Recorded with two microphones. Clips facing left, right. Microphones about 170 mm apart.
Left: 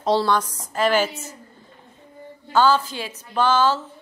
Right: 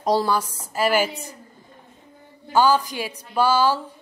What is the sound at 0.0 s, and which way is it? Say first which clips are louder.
A woman's voice: left 1 dB; 10° right (ahead or behind).